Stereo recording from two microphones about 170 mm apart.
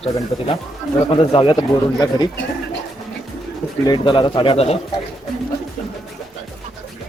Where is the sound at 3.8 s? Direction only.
30° left (ahead or behind).